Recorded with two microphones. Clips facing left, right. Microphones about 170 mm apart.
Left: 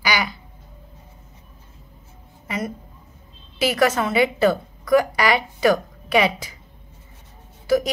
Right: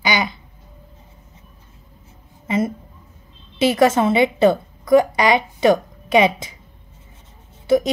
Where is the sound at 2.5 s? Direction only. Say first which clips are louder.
Right 7 dB; 25° right (ahead or behind).